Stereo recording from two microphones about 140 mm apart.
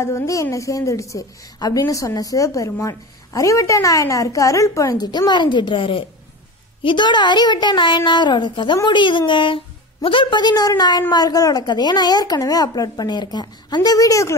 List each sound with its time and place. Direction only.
0.0 s a woman's voice: 20° left (ahead or behind)